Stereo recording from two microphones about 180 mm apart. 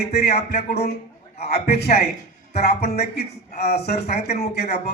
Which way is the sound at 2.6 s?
60° left (ahead or behind).